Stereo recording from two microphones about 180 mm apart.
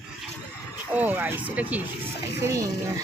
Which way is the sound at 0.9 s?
10° right (ahead or behind).